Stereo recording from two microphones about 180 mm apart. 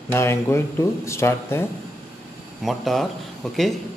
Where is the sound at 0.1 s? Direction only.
15° left (ahead or behind).